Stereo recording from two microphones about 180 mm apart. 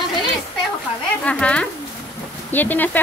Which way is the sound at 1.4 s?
5° left (ahead or behind).